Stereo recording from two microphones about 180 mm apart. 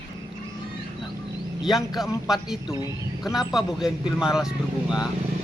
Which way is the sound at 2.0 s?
Centre (ahead or behind).